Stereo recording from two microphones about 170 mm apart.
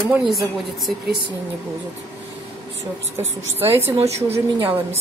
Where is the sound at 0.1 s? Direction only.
Centre (ahead or behind).